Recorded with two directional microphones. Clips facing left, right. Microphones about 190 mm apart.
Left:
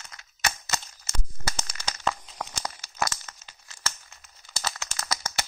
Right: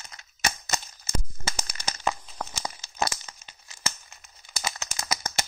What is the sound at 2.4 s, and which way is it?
Crumpling, 5° right (ahead or behind).